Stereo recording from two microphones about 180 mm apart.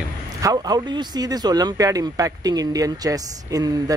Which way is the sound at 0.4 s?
20° right (ahead or behind).